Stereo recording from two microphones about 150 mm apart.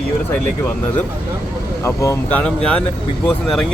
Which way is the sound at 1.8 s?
20° left (ahead or behind).